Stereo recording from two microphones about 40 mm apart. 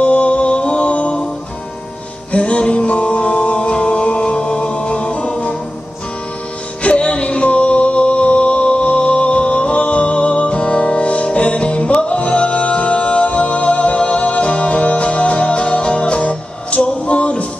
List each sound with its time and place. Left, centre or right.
0.0 s music: left
2.3 s music: left
6.8 s music: left